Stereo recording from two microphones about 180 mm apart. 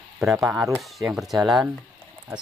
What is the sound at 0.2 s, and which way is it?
Speech, centre (ahead or behind).